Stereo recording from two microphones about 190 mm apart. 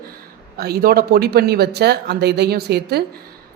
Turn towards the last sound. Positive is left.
turn(degrees=-60)  # may be behind; listen again after turning